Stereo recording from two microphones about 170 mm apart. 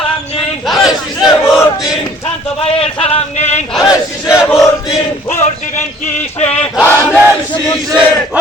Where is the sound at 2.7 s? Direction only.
35° left (ahead or behind).